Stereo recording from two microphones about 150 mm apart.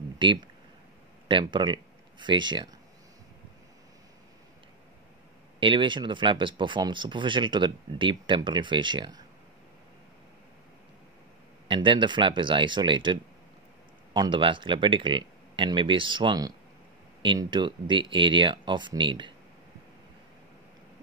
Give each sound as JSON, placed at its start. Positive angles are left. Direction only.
{"t": 0.2, "sound": "speech", "side_deg": -30}
{"t": 5.6, "sound": "speech", "side_deg": -35}
{"t": 11.6, "sound": "speech", "side_deg": -35}